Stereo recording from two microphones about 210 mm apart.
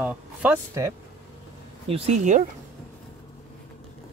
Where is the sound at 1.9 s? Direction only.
35° right (ahead or behind).